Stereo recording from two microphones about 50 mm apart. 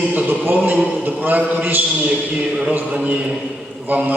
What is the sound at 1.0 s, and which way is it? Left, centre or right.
A man's voice, right.